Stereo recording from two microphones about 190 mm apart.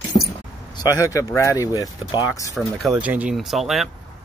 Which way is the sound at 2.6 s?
Centre (ahead or behind).